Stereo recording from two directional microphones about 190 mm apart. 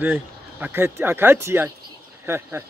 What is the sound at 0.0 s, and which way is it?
Speech, 10° right (ahead or behind).